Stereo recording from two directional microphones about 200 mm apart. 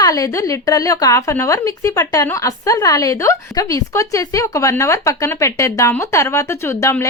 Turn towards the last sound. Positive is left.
turn(degrees=15)  # may be behind; listen again after turning